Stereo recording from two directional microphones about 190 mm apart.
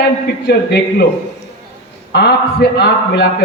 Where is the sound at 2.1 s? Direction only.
60° left (ahead or behind).